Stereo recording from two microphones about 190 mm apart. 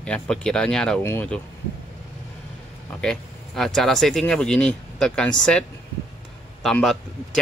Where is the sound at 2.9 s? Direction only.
5° left (ahead or behind).